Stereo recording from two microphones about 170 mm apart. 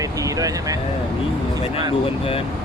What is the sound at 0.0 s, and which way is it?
Vehicle, 20° right (ahead or behind).